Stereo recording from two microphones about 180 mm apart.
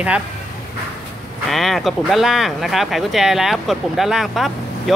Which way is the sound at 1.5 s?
Centre (ahead or behind).